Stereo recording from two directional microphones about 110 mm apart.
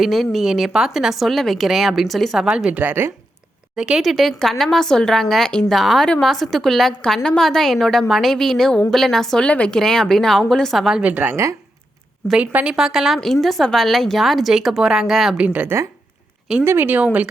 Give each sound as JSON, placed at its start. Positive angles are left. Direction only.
{"t": 0.0, "sound": "speech", "side_deg": 0}
{"t": 3.8, "sound": "speech", "side_deg": -5}
{"t": 11.0, "sound": "a woman's voice", "side_deg": -15}
{"t": 15.4, "sound": "speech", "side_deg": -15}